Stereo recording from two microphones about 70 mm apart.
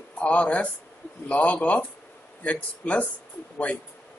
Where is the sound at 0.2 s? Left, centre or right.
Centre.